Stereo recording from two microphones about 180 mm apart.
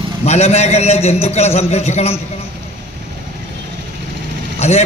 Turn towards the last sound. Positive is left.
turn(degrees=35)  # may be behind; listen again after turning